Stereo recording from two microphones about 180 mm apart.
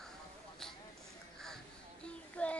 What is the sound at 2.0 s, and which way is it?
Child singing, 5° left (ahead or behind).